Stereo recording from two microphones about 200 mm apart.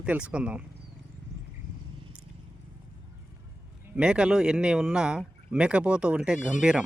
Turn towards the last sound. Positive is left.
turn(degrees=-5)  # may be behind; listen again after turning